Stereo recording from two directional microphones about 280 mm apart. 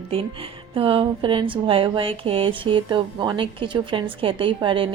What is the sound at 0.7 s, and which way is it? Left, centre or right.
Speech, centre.